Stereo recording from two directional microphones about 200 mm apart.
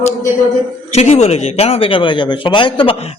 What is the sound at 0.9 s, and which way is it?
Speech, 35° left (ahead or behind).